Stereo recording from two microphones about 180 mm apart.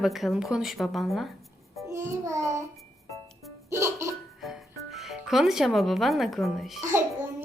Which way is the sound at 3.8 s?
15° right (ahead or behind).